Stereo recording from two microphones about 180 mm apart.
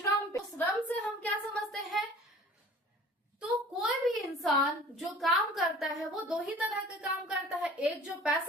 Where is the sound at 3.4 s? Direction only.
Centre (ahead or behind).